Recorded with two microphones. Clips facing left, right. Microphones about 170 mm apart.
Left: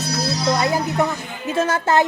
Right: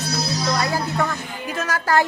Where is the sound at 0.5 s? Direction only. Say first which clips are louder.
Left 3 dB; 20° left (ahead or behind).